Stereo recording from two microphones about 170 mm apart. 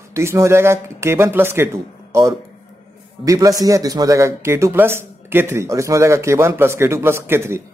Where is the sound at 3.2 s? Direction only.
20° right (ahead or behind).